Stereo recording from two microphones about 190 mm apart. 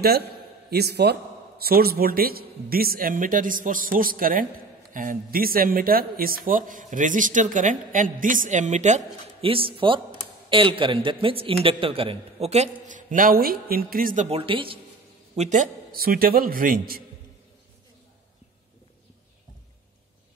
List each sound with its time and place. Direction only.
0.0 s a man's voice: 55° right (ahead or behind)